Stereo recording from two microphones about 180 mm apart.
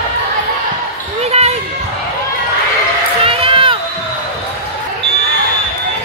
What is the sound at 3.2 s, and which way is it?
Crowd, 30° right (ahead or behind).